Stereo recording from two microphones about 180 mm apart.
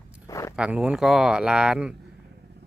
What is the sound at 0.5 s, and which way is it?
Speech, 5° right (ahead or behind).